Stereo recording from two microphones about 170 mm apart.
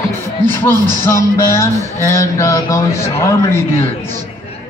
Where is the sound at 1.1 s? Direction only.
15° left (ahead or behind).